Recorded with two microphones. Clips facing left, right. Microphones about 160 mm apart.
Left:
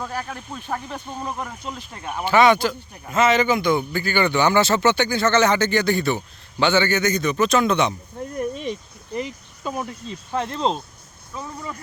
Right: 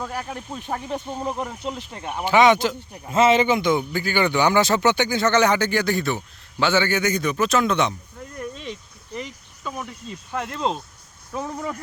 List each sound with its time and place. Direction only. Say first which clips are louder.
0.0 s speech: even; 10° right (ahead or behind)
8.4 s a sound: left 6 dB; 15° left (ahead or behind)
10.4 s speech: left 2 dB; 25° left (ahead or behind)
11.3 s speech: right 4 dB; 60° right (ahead or behind)